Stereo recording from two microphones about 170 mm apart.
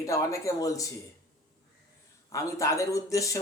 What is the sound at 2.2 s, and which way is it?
A man's voice, 20° left (ahead or behind).